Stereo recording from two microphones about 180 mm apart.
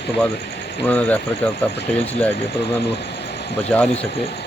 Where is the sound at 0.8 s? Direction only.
10° left (ahead or behind).